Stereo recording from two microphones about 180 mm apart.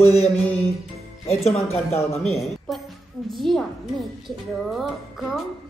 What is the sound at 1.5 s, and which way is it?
Speech, 35° left (ahead or behind).